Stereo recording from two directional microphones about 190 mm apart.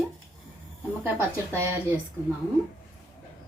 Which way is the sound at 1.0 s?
15° right (ahead or behind).